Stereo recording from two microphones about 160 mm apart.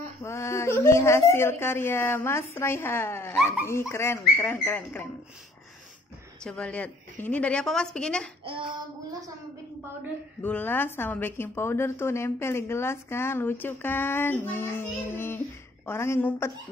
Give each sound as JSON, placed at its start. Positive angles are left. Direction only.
{"t": 0.2, "sound": "a woman's voice", "side_deg": 15}
{"t": 6.4, "sound": "a woman's voice", "side_deg": 5}
{"t": 10.4, "sound": "a woman's voice", "side_deg": 10}